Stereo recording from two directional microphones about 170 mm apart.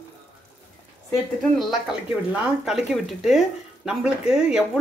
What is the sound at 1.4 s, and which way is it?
Speech, centre (ahead or behind).